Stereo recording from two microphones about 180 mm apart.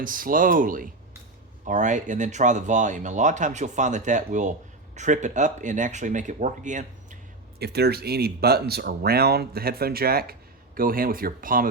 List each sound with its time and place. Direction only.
0.0 s speech: 50° right (ahead or behind)
7.6 s speech: 65° right (ahead or behind)